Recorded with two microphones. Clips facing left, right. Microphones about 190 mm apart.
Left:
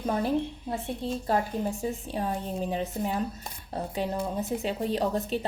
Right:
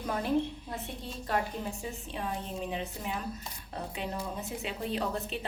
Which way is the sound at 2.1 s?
40° left (ahead or behind).